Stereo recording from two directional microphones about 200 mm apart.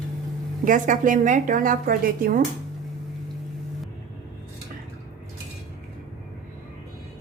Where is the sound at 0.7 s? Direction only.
40° right (ahead or behind).